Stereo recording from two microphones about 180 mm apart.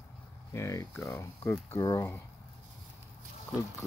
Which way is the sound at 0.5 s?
15° left (ahead or behind).